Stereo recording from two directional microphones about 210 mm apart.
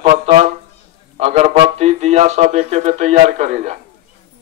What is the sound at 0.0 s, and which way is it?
Speech, 25° right (ahead or behind).